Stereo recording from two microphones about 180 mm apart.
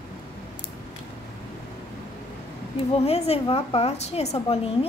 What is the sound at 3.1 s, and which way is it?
A woman's voice, 35° left (ahead or behind).